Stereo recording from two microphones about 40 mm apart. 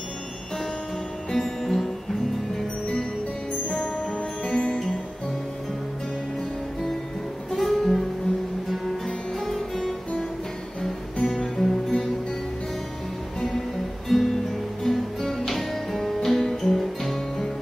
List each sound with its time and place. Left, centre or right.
1.3 s music: centre
4.5 s music: left
7.5 s music: centre
9.0 s music: centre
11.2 s music: centre
14.0 s music: centre